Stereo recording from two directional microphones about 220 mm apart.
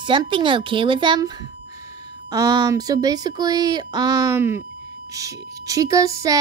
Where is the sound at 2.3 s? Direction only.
20° right (ahead or behind).